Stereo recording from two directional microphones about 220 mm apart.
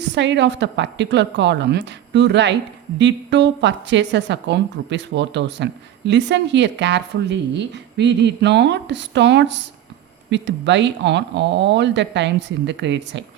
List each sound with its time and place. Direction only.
0.0 s speech: 55° right (ahead or behind)